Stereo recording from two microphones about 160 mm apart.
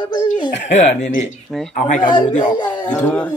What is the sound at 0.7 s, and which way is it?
Speech, 45° left (ahead or behind).